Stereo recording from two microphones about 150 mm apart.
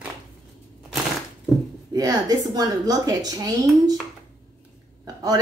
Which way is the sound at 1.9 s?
25° right (ahead or behind).